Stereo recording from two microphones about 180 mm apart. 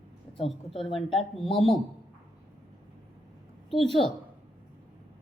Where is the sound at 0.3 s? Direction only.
30° left (ahead or behind).